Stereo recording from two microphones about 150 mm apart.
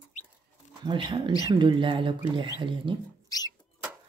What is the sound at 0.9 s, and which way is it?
Speech, 30° right (ahead or behind).